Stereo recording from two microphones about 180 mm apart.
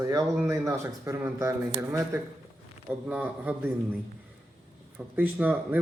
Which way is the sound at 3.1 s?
10° right (ahead or behind).